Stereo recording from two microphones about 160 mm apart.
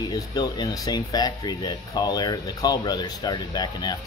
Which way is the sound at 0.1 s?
25° left (ahead or behind).